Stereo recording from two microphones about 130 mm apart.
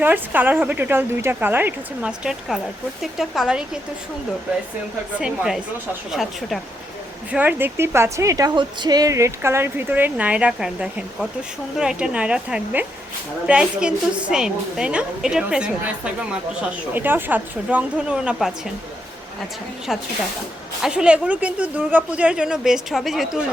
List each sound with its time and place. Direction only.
0.0 s speech: 15° right (ahead or behind)
5.2 s speech: 5° right (ahead or behind)
7.3 s speech: 10° right (ahead or behind)
16.9 s speech: 15° right (ahead or behind)
19.9 s speech: centre (ahead or behind)